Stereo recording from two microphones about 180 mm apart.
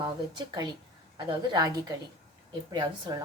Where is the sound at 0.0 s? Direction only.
25° right (ahead or behind).